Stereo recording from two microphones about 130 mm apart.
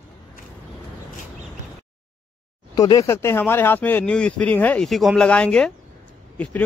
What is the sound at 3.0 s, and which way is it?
Speech, 20° left (ahead or behind).